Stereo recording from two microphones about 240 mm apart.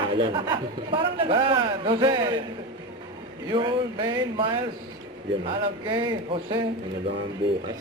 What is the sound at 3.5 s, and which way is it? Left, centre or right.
Speech, centre.